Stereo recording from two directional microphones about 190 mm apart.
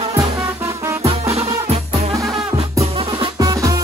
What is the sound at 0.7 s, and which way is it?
Music, 15° right (ahead or behind).